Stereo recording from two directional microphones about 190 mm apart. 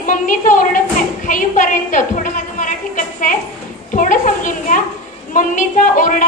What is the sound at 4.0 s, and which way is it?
A child's voice, 40° left (ahead or behind).